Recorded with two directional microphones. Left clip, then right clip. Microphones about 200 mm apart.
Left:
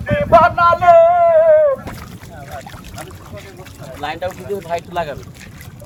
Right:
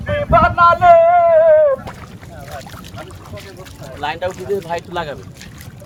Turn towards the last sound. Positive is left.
turn(degrees=-20)  # may be behind; listen again after turning